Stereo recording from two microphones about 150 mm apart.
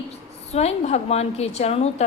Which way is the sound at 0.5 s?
45° left (ahead or behind).